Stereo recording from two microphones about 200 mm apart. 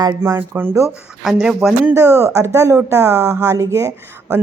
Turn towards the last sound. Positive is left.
turn(degrees=-15)  # may be behind; listen again after turning